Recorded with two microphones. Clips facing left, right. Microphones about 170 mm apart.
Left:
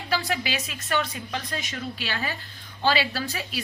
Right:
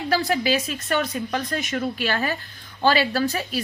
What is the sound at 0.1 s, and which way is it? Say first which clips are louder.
A woman's voice: right 6 dB; 40° right (ahead or behind).